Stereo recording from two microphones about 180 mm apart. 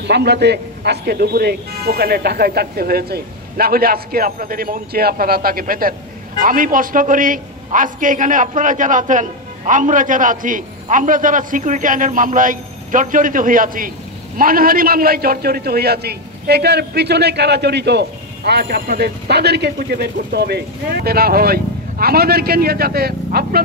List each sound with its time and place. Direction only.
0.0 s a man's voice: 65° right (ahead or behind)